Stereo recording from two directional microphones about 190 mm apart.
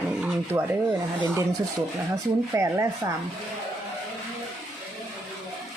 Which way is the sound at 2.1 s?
15° right (ahead or behind).